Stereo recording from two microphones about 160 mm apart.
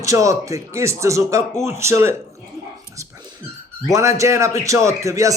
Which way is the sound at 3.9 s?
20° right (ahead or behind).